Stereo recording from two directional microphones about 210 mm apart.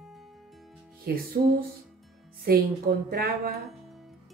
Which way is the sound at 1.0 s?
45° right (ahead or behind).